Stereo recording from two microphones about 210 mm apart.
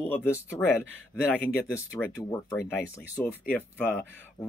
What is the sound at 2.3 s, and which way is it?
Speech, 15° left (ahead or behind).